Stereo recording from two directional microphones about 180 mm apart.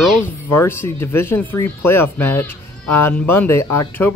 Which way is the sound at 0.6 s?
15° left (ahead or behind).